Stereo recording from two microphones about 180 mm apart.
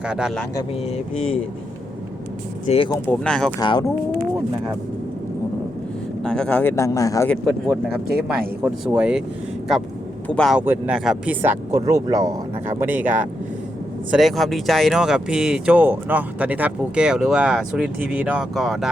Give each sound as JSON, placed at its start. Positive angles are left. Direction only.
{"t": 0.0, "sound": "speech", "side_deg": -5}
{"t": 2.6, "sound": "speech", "side_deg": 30}
{"t": 3.1, "sound": "speech", "side_deg": 5}
{"t": 3.6, "sound": "speech", "side_deg": 25}
{"t": 6.2, "sound": "speech", "side_deg": 5}
{"t": 8.6, "sound": "speech", "side_deg": -5}
{"t": 10.2, "sound": "speech", "side_deg": 5}
{"t": 10.6, "sound": "speech", "side_deg": -10}
{"t": 11.7, "sound": "speech", "side_deg": -20}
{"t": 14.1, "sound": "speech", "side_deg": 0}